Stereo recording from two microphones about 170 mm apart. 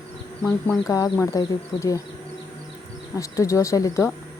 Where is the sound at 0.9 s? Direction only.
20° left (ahead or behind).